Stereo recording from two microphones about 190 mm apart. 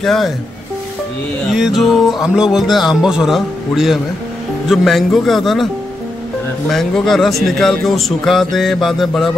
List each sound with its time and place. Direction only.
0.0 s a man's voice: centre (ahead or behind)
1.5 s a man's voice: centre (ahead or behind)
6.7 s a man's voice: centre (ahead or behind)